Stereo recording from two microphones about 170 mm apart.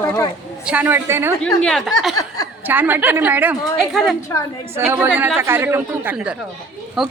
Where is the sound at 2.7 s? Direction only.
10° right (ahead or behind).